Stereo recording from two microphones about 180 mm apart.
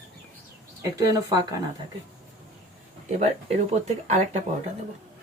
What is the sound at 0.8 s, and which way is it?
Speech, 20° right (ahead or behind).